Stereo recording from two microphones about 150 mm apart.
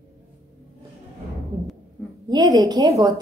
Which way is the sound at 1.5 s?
35° right (ahead or behind).